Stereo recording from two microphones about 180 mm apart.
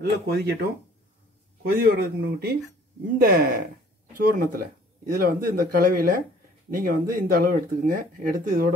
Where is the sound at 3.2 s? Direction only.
55° right (ahead or behind).